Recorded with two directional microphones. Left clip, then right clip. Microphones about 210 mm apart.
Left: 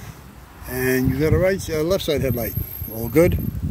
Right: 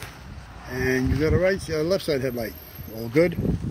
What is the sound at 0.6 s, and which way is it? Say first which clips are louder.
Speech: left 3 dB; 25° left (ahead or behind).